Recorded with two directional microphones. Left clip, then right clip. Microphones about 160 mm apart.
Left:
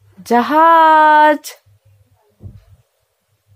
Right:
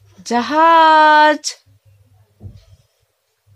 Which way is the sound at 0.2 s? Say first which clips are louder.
Left 3 dB; 20° left (ahead or behind).